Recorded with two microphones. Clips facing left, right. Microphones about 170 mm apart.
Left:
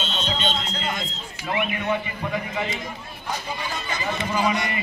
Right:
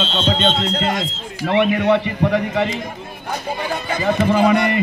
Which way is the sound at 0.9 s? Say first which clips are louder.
Right 8 dB; 80° right.